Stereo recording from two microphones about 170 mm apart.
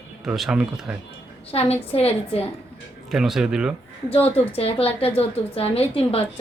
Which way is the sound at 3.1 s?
Centre (ahead or behind).